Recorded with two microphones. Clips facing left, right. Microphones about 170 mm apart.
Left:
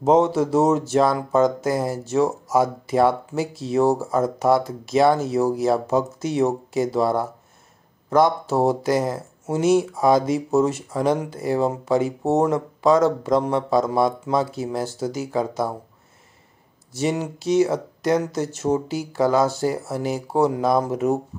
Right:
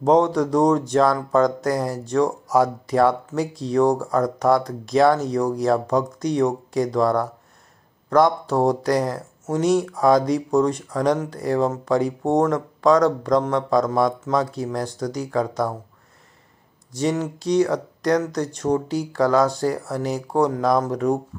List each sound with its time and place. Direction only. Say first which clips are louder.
0.0 s speech: even; 5° left (ahead or behind)
17.2 s speech: left 2 dB; 5° left (ahead or behind)